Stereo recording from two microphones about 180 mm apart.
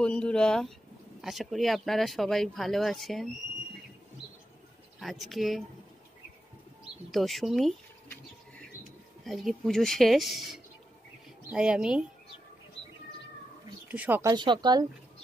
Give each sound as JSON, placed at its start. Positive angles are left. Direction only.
{"t": 0.0, "sound": "speech", "side_deg": 5}
{"t": 5.0, "sound": "speech", "side_deg": 0}
{"t": 6.8, "sound": "speech", "side_deg": 0}
{"t": 9.2, "sound": "speech", "side_deg": 0}
{"t": 13.8, "sound": "speech", "side_deg": -10}
{"t": 14.3, "sound": "speech", "side_deg": -25}